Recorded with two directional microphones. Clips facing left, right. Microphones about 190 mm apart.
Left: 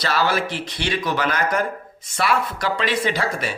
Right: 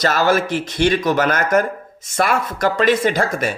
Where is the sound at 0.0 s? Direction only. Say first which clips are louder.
Right 5 dB; 45° right (ahead or behind).